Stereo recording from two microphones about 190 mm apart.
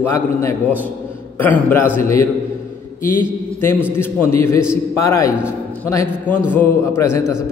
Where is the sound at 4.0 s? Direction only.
15° left (ahead or behind).